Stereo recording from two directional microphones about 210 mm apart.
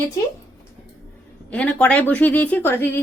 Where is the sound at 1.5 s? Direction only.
5° left (ahead or behind).